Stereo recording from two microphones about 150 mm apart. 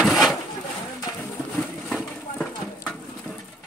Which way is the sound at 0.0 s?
Centre (ahead or behind).